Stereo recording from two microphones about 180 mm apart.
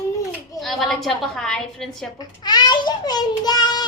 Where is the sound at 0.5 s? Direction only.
Centre (ahead or behind).